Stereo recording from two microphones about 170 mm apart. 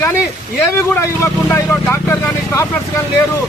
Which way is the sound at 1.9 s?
15° left (ahead or behind).